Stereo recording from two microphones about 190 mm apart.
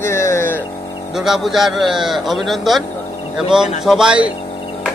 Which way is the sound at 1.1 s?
Centre (ahead or behind).